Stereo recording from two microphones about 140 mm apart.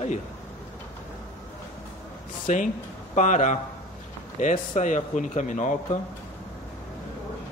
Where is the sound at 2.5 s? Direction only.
65° left (ahead or behind).